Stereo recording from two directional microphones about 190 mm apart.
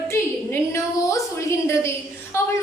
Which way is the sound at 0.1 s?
15° left (ahead or behind).